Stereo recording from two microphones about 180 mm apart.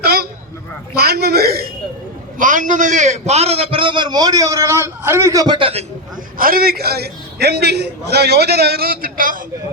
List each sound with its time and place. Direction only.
0.0 s a sound: 60° right (ahead or behind)
0.9 s a man's voice: 60° right (ahead or behind)
2.4 s a man's voice: 45° right (ahead or behind); by 5.8 s 30° right (ahead or behind)
6.3 s a man's voice: 55° right (ahead or behind)